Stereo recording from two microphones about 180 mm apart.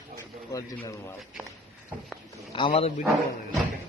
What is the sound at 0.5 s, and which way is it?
Speech, 20° left (ahead or behind).